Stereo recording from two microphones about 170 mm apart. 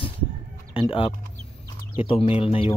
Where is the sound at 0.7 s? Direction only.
30° left (ahead or behind).